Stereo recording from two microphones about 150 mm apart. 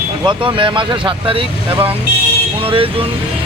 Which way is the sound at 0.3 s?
35° right (ahead or behind).